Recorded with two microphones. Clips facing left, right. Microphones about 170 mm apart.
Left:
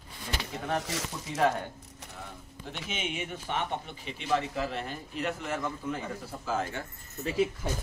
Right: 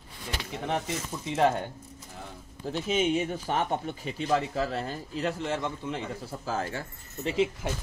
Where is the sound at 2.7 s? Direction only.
40° right (ahead or behind).